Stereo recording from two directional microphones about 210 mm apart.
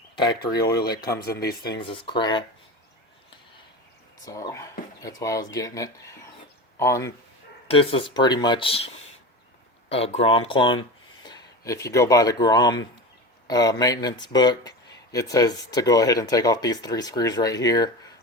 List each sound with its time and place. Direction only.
0.5 s speech: 20° left (ahead or behind)
1.5 s speech: 50° left (ahead or behind)
1.8 s speech: 25° left (ahead or behind)
4.3 s speech: 15° left (ahead or behind)
7.7 s speech: 25° left (ahead or behind)